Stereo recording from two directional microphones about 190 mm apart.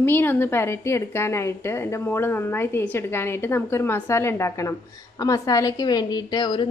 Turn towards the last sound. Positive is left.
turn(degrees=25)  # may be behind; listen again after turning